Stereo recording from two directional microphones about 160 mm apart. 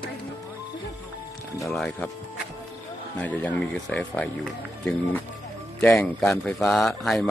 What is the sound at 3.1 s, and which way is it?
Speech, 10° left (ahead or behind).